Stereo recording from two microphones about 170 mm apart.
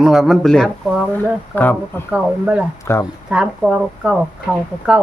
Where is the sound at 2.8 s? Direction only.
15° left (ahead or behind).